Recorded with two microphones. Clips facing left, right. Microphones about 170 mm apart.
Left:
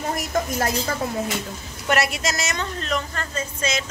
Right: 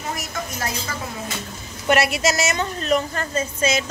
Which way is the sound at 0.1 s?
50° left (ahead or behind).